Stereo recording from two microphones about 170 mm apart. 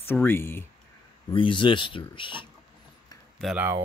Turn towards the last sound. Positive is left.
turn(degrees=-10)  # may be behind; listen again after turning